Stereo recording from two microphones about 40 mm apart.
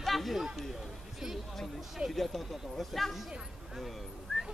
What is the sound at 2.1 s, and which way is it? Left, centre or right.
Speech, centre.